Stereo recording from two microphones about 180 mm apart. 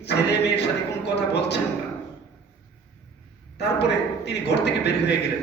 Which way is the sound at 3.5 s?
70° left (ahead or behind).